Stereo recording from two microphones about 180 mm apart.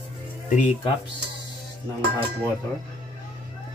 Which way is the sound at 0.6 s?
40° left (ahead or behind).